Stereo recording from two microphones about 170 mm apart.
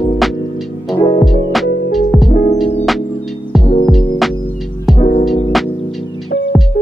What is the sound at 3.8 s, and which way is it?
Music, centre (ahead or behind).